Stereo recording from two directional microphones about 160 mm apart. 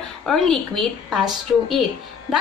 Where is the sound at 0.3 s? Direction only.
Centre (ahead or behind).